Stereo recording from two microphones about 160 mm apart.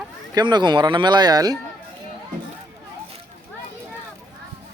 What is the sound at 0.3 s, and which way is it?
Speech, 30° right (ahead or behind).